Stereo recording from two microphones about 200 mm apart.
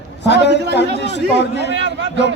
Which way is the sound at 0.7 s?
60° left (ahead or behind).